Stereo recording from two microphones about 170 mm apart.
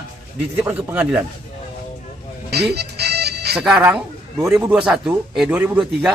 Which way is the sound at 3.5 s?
5° right (ahead or behind).